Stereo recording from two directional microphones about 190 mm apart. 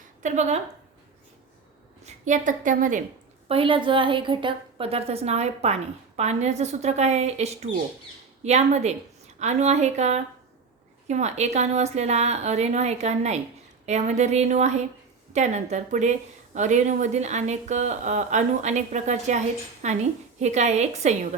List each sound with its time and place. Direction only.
0.2 s a woman's voice: 40° right (ahead or behind)
2.0 s a woman's voice: 40° right (ahead or behind)
3.5 s a woman's voice: 30° right (ahead or behind)